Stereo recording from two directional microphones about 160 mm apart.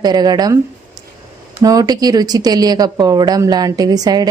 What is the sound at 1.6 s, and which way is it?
Speech, 25° right (ahead or behind).